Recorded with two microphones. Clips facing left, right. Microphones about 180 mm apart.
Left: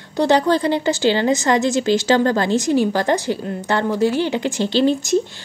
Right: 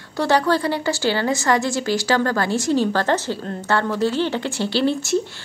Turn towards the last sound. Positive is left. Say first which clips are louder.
# left 3 dB
turn(degrees=20)  # may be behind; listen again after turning